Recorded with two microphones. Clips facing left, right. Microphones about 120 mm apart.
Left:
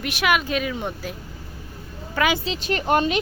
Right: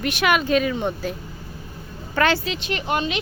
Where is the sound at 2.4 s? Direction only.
40° left (ahead or behind).